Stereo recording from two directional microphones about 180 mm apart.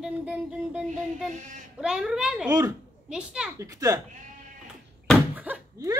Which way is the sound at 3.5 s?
20° right (ahead or behind).